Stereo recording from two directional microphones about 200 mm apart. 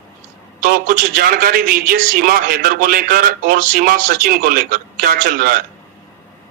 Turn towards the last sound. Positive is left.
turn(degrees=-45)  # may be behind; listen again after turning